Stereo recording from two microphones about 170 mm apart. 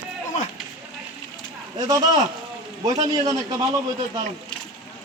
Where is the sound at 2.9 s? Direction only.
20° right (ahead or behind).